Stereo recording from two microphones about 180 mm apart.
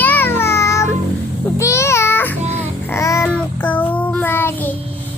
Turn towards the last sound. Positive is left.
turn(degrees=10)  # may be behind; listen again after turning